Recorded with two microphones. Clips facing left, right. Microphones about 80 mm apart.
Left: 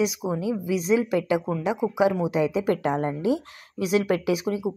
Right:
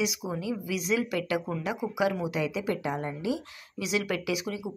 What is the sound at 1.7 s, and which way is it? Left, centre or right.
Speech, left.